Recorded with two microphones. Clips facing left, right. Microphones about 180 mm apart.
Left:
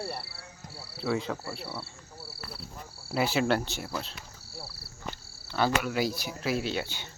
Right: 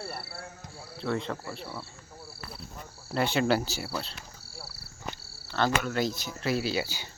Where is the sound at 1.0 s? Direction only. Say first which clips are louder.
Left 1 dB; 5° left (ahead or behind).